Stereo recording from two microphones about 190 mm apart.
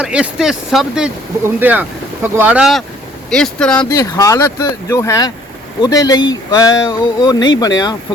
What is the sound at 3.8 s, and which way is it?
Speech, 20° left (ahead or behind).